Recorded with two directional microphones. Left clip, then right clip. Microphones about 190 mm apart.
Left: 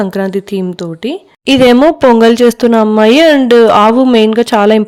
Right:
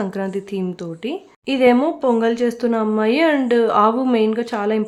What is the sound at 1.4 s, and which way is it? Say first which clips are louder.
A woman's voice: left 9 dB; 45° left (ahead or behind).